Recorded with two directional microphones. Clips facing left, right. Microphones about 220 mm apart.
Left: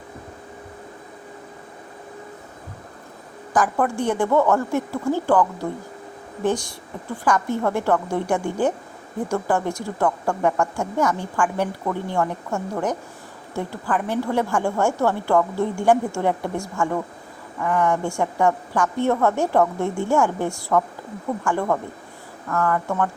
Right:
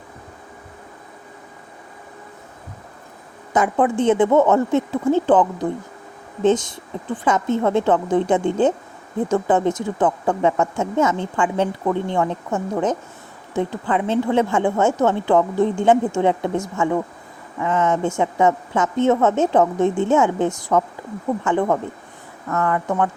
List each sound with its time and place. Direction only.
3.5 s a woman's voice: 20° right (ahead or behind)